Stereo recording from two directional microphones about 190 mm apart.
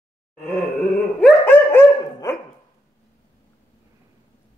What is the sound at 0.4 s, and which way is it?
Dog, 5° left (ahead or behind).